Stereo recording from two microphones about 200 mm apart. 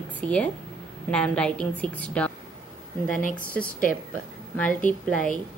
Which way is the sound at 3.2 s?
40° left (ahead or behind).